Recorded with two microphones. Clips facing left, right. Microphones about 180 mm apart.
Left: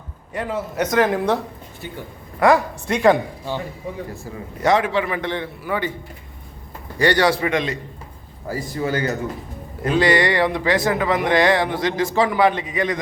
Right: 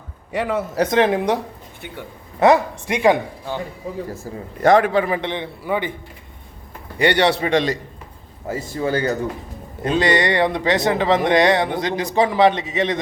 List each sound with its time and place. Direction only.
0.3 s a man's voice: 70° right (ahead or behind)
0.8 s a man's voice: 25° right (ahead or behind)
2.4 s a man's voice: 15° right (ahead or behind)
4.6 s a man's voice: 50° right (ahead or behind)
5.1 s a man's voice: 20° right (ahead or behind)
7.0 s a man's voice: 25° right (ahead or behind)
8.4 s a man's voice: 25° right (ahead or behind)